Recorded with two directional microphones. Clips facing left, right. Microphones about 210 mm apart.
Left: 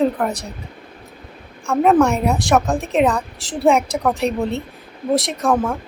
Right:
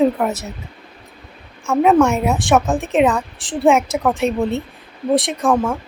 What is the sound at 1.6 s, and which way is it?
A woman's voice, centre (ahead or behind).